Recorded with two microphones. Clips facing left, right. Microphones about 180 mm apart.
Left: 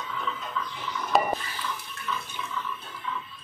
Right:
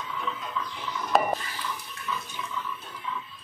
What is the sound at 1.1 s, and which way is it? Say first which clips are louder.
Stir: even; centre (ahead or behind).